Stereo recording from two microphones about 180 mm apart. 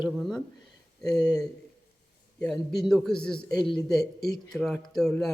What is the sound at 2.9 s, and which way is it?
Speech, 5° left (ahead or behind).